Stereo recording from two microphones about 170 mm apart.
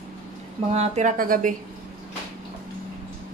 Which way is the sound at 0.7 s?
40° right (ahead or behind).